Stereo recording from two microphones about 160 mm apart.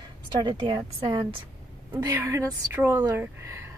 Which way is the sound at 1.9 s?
15° right (ahead or behind).